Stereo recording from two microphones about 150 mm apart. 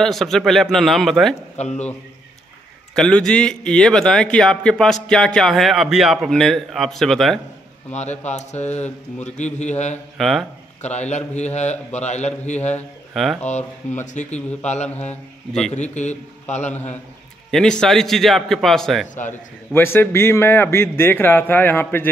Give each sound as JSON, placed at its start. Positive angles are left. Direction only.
{"t": 0.0, "sound": "a man's voice", "side_deg": 0}
{"t": 1.6, "sound": "a man's voice", "side_deg": 50}
{"t": 2.9, "sound": "a man's voice", "side_deg": 5}
{"t": 7.9, "sound": "a man's voice", "side_deg": 50}
{"t": 10.1, "sound": "a man's voice", "side_deg": 0}
{"t": 10.8, "sound": "a man's voice", "side_deg": 50}
{"t": 13.1, "sound": "a man's voice", "side_deg": 0}
{"t": 13.5, "sound": "a man's voice", "side_deg": 50}
{"t": 17.5, "sound": "a man's voice", "side_deg": 5}
{"t": 19.7, "sound": "a man's voice", "side_deg": 15}